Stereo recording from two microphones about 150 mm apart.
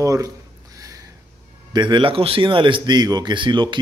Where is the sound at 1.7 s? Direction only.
30° right (ahead or behind).